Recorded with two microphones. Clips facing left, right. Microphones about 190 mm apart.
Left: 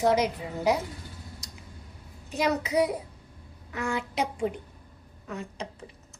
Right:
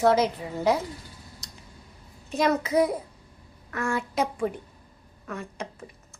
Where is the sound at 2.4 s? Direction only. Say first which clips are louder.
Right 3 dB; 15° left (ahead or behind).